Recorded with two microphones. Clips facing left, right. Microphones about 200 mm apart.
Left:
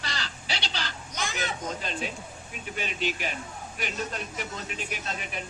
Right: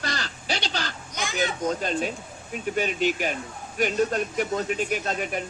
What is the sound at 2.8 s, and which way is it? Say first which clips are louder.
Speech: right 7 dB; 50° right (ahead or behind).